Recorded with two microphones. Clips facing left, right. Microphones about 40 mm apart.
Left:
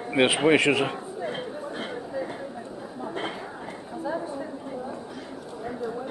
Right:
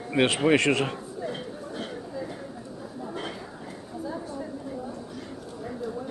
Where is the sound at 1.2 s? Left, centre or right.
Left.